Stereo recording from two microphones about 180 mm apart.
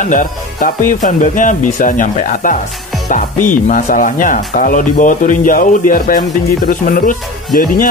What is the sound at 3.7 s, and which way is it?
Speech, 45° left (ahead or behind).